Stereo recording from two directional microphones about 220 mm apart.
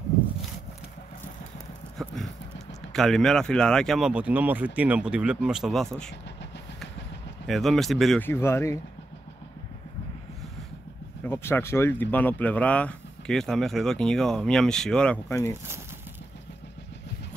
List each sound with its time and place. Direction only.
2.0 s clip-clop: 5° left (ahead or behind)
2.9 s speech: centre (ahead or behind)
7.4 s speech: centre (ahead or behind)
11.2 s speech: 10° left (ahead or behind)